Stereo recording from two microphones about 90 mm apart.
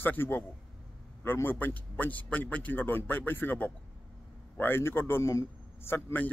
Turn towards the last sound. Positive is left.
turn(degrees=25)  # may be behind; listen again after turning